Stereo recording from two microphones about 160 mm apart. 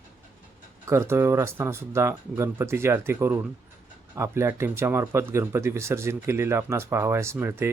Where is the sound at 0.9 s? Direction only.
15° right (ahead or behind).